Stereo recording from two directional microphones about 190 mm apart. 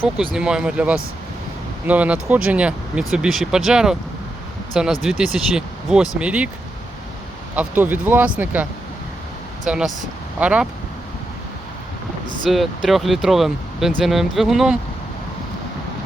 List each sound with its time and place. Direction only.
0.3 s speech: 5° right (ahead or behind)
7.5 s speech: 10° right (ahead or behind)
9.6 s speech: 5° right (ahead or behind)
12.5 s speech: centre (ahead or behind)